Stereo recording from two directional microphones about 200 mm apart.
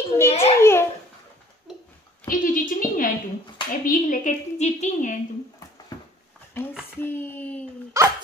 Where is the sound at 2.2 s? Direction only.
40° left (ahead or behind).